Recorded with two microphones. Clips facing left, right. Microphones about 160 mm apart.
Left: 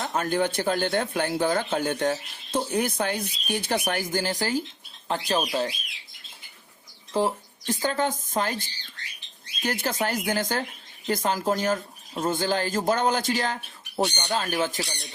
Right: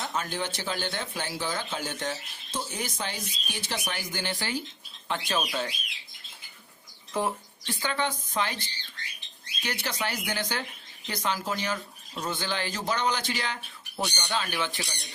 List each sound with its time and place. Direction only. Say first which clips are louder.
0.0 s speech: left 7 dB; 50° left (ahead or behind); by 5.7 s 35° left (ahead or behind)
7.1 s speech: left 5 dB; 30° left (ahead or behind)